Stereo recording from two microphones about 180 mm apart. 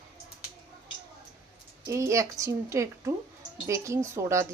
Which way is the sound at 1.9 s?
15° right (ahead or behind).